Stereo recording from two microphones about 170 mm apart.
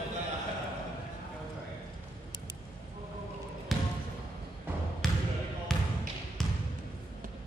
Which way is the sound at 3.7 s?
Centre (ahead or behind).